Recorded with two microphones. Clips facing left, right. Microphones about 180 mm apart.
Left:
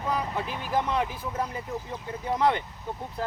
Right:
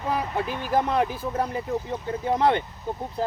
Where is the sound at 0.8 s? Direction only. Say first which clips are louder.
Right 4 dB; 40° right (ahead or behind).